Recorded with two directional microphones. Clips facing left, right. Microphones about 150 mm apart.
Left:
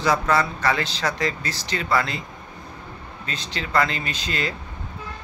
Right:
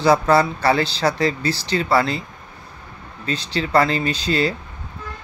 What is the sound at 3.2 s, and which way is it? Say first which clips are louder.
Speech: right 8 dB; 35° right (ahead or behind).